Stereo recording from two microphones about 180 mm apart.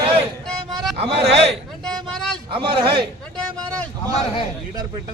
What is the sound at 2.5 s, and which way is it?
Speech, 30° right (ahead or behind).